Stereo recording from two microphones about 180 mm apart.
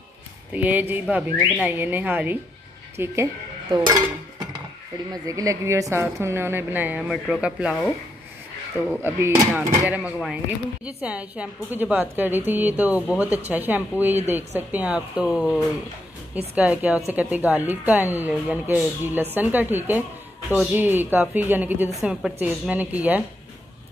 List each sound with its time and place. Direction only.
0.5 s a woman's voice: 10° right (ahead or behind)
3.7 s dishes: 20° right (ahead or behind)
5.1 s a woman's voice: 20° right (ahead or behind); by 7.9 s centre (ahead or behind)
9.0 s a woman's voice: 10° right (ahead or behind)